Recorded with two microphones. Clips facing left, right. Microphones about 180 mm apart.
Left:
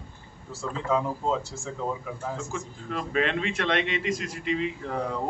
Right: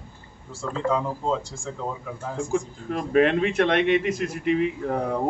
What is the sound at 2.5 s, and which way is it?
A man's voice, 50° right (ahead or behind).